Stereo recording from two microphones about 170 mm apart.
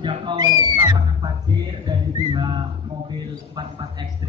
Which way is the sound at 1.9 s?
25° right (ahead or behind).